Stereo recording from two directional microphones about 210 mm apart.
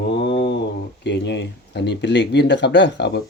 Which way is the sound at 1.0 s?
55° left (ahead or behind).